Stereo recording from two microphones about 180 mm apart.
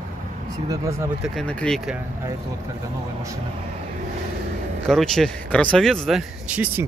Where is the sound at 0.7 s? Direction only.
15° right (ahead or behind).